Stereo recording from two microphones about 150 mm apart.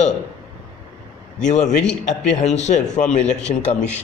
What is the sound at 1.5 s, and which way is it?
A man's voice, 55° left (ahead or behind).